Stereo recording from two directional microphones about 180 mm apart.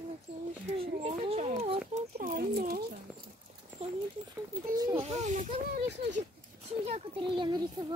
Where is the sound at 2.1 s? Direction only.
55° right (ahead or behind).